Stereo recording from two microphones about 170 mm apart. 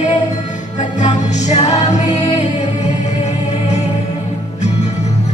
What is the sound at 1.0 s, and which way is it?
Music, 40° left (ahead or behind).